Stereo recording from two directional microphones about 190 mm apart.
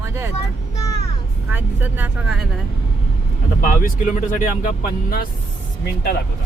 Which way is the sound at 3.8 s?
45° left (ahead or behind).